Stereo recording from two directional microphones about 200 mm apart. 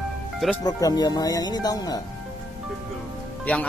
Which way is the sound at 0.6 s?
20° left (ahead or behind).